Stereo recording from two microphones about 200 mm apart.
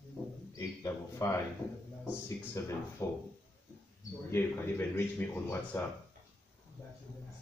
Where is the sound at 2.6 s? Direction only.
15° left (ahead or behind).